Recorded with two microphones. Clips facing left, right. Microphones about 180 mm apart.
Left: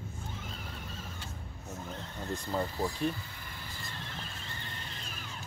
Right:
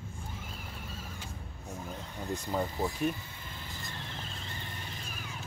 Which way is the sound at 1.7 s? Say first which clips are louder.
Right 1 dB; 10° right (ahead or behind).